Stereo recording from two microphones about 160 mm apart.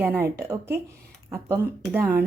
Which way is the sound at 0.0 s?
10° right (ahead or behind).